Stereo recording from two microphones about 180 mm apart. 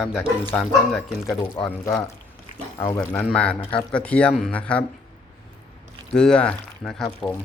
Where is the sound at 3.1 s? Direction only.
5° left (ahead or behind).